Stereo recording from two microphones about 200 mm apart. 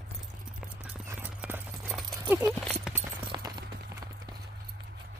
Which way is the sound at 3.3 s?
20° right (ahead or behind).